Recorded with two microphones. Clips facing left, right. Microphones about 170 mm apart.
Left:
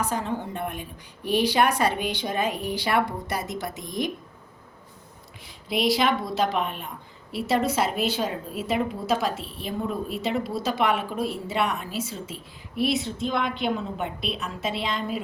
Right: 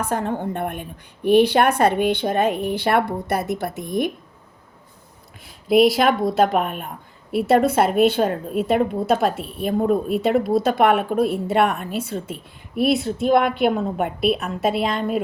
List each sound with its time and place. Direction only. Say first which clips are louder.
0.0 s a woman's voice: right 4 dB; 55° right (ahead or behind)
5.7 s speech: right 9 dB; centre (ahead or behind)
6.3 s a woman's voice: right 6 dB; 55° right (ahead or behind)